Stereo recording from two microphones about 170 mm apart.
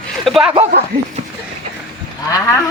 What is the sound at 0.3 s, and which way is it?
Speech, centre (ahead or behind).